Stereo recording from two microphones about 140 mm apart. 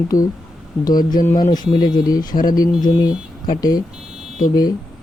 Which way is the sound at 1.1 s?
65° left (ahead or behind).